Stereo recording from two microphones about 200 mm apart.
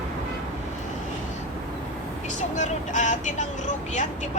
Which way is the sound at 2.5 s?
40° left (ahead or behind).